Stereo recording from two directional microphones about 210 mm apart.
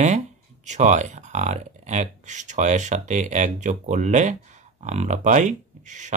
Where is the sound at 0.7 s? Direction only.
35° right (ahead or behind).